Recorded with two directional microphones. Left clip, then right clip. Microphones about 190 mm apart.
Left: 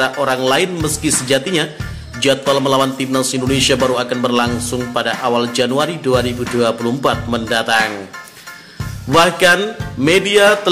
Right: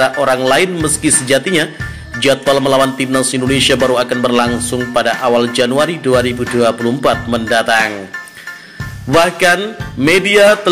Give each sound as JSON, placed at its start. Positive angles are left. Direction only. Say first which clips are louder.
{"t": 0.0, "sound": "a man's voice", "louder": "right 4 dB", "side_deg": -15}
{"t": 9.1, "sound": "a man's voice", "louder": "right 1 dB", "side_deg": -15}